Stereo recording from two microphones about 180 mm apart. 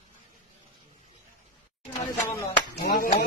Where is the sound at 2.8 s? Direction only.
60° left (ahead or behind).